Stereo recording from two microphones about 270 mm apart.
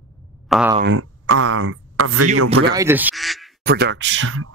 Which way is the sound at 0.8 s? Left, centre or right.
Right.